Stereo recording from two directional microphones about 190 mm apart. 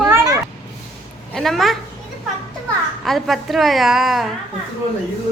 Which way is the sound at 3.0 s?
Centre (ahead or behind).